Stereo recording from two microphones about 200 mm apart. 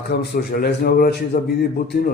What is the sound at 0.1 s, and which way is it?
A man's voice, 50° left (ahead or behind).